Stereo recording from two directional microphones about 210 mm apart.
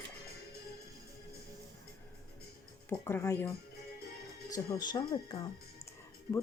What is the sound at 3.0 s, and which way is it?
Speech, 15° left (ahead or behind).